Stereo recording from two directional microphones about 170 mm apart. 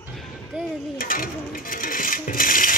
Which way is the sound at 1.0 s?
55° left (ahead or behind).